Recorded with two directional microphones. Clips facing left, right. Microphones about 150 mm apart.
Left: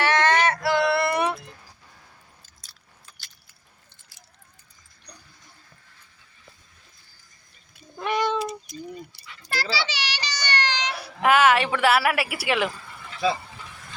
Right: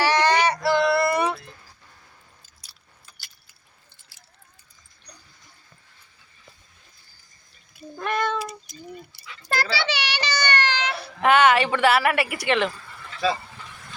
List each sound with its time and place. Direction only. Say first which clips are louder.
0.0 s female singing: right 1 dB; centre (ahead or behind)
0.8 s male singing: right 2 dB; 5° left (ahead or behind)
7.9 s cat: left 1 dB; 10° left (ahead or behind)
8.4 s cat: left 3 dB; centre (ahead or behind)
9.5 s a sound: right 3 dB; 55° right (ahead or behind)
10.9 s a woman's voice: right 1 dB; 10° left (ahead or behind)